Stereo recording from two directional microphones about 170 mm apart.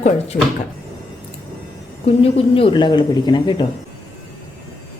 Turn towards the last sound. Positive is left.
turn(degrees=25)  # may be behind; listen again after turning